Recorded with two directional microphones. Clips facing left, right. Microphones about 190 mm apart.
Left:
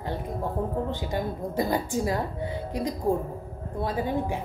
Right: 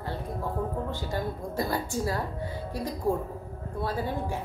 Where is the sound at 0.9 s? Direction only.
15° left (ahead or behind).